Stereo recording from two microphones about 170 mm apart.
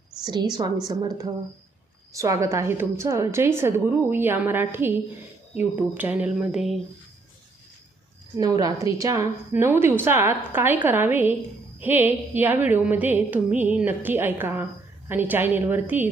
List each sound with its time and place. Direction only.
0.3 s a woman's voice: 25° right (ahead or behind); by 6.7 s centre (ahead or behind)
8.4 s a woman's voice: 20° right (ahead or behind)